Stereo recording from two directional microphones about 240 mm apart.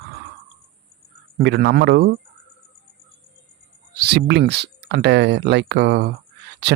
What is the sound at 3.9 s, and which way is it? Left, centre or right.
Speech, right.